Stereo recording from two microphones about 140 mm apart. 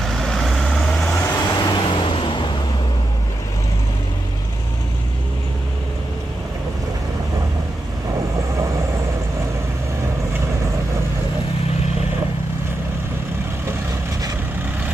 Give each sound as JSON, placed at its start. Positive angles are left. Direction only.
{"t": 0.0, "sound": "vehicle", "side_deg": 0}
{"t": 1.0, "sound": "vehicle", "side_deg": 20}